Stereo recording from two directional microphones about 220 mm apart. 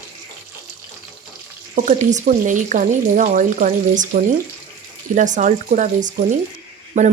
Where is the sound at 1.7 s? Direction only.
35° right (ahead or behind).